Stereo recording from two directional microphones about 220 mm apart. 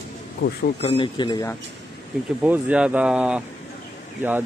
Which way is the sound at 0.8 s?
25° left (ahead or behind).